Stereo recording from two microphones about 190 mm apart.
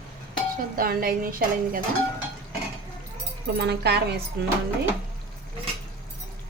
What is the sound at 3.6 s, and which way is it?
Speech, 60° right (ahead or behind).